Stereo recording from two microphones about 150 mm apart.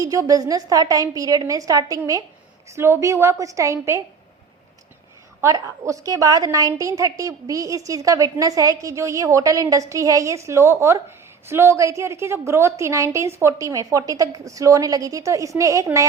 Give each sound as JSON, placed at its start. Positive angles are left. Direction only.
{"t": 0.0, "sound": "a woman's voice", "side_deg": -20}
{"t": 5.4, "sound": "a woman's voice", "side_deg": -20}